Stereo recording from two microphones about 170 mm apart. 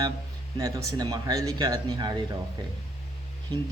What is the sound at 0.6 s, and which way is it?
Speech, 20° right (ahead or behind).